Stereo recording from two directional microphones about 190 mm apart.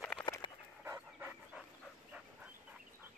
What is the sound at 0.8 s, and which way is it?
Dog, 10° right (ahead or behind).